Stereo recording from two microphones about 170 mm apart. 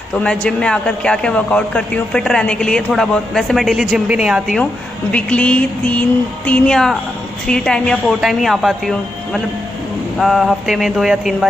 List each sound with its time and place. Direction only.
0.2 s a man's voice: 5° left (ahead or behind)
5.1 s a man's voice: 5° left (ahead or behind)